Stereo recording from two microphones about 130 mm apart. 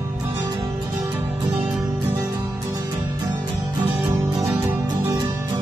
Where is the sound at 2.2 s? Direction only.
25° right (ahead or behind).